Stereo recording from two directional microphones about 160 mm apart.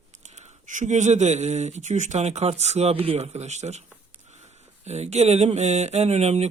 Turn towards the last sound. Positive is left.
turn(degrees=-45)  # may be behind; listen again after turning